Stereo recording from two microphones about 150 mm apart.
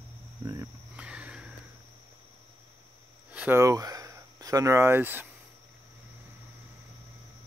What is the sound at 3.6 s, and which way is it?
Speech, 25° right (ahead or behind).